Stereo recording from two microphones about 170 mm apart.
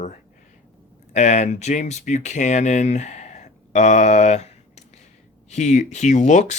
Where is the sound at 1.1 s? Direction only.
45° left (ahead or behind).